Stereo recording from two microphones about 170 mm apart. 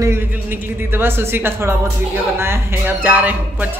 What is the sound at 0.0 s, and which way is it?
Speech, 15° right (ahead or behind).